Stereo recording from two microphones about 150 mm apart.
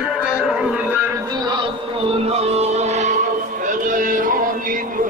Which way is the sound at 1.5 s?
35° right (ahead or behind).